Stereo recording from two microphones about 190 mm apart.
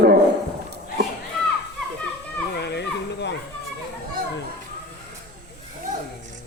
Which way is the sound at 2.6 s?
60° left (ahead or behind).